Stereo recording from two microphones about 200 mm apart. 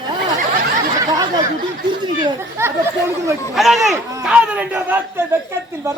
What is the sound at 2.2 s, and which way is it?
A man's voice, 15° right (ahead or behind).